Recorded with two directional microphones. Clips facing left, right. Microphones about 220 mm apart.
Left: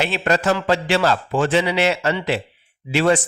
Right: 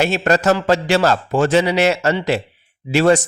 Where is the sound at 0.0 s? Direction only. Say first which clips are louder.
Right 4 dB; 45° right (ahead or behind).